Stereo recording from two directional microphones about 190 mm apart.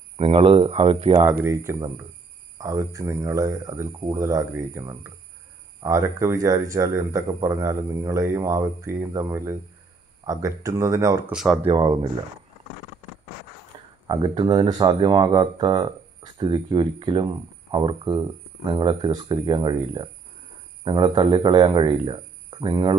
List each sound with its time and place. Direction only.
0.2 s speech: 30° right (ahead or behind)
1.4 s speech: 15° right (ahead or behind)
11.3 s speech: centre (ahead or behind)
11.6 s speech: 25° right (ahead or behind)
14.0 s speech: 25° right (ahead or behind)